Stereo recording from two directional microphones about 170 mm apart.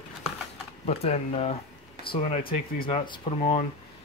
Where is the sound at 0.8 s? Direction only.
40° left (ahead or behind).